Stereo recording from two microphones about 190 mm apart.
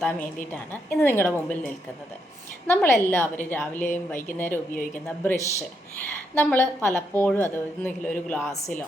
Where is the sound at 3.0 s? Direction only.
10° left (ahead or behind).